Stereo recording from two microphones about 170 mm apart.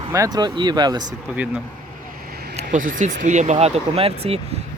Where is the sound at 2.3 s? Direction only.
65° right (ahead or behind).